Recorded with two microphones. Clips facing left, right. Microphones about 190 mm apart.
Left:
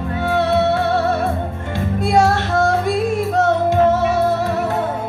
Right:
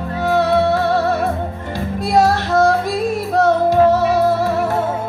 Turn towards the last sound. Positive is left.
turn(degrees=20)  # may be behind; listen again after turning